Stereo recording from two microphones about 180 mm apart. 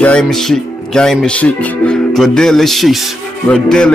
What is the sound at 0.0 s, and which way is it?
Speech, 5° left (ahead or behind).